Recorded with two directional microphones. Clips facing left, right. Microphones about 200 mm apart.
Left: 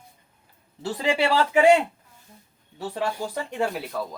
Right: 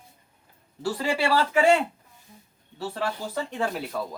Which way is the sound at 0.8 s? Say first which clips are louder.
Left 2 dB; 20° left (ahead or behind).